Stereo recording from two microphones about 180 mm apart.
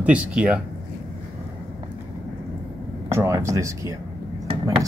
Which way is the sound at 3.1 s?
15° right (ahead or behind).